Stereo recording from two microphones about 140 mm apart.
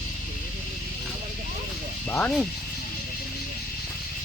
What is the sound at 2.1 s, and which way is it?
Speech, 10° left (ahead or behind).